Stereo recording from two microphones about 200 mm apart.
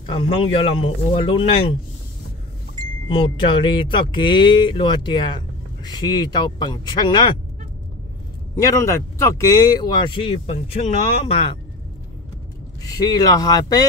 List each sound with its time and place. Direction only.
0.1 s speech: 25° left (ahead or behind)
3.1 s speech: 25° left (ahead or behind)
8.5 s speech: 15° left (ahead or behind)
12.8 s speech: 20° left (ahead or behind)